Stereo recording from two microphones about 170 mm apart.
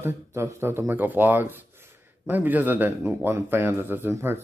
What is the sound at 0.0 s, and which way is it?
Speech, 15° right (ahead or behind).